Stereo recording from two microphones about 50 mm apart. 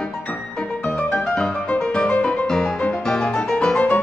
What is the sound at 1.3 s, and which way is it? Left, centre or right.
Music, centre.